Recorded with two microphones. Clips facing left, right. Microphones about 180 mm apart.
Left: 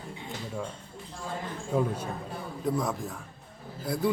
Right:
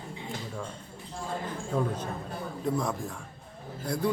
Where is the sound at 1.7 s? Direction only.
10° left (ahead or behind).